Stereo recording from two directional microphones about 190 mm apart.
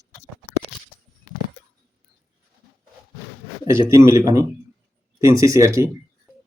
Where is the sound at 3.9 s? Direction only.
15° right (ahead or behind).